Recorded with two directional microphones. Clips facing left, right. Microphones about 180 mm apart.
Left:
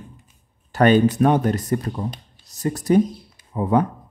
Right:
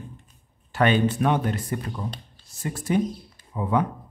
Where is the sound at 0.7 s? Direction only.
40° left (ahead or behind).